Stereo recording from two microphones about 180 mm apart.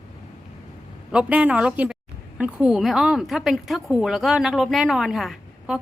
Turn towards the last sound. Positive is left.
turn(degrees=0)  # may be behind; listen again after turning